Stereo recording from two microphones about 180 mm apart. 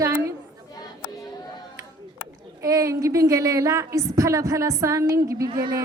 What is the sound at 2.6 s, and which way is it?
A woman's voice, 20° right (ahead or behind).